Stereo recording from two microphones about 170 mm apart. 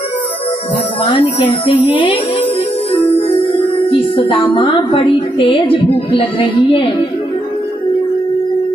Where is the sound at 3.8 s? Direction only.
30° left (ahead or behind).